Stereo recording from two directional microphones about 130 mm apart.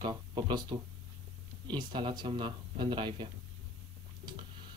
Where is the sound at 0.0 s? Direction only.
35° right (ahead or behind).